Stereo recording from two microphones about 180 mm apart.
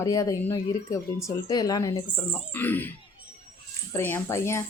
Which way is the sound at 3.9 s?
10° left (ahead or behind).